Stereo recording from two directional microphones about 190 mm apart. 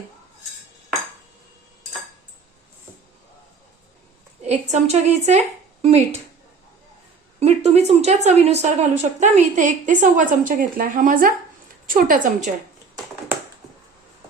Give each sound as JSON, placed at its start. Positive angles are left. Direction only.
{"t": 4.4, "sound": "speech", "side_deg": -35}
{"t": 7.3, "sound": "a woman's voice", "side_deg": -35}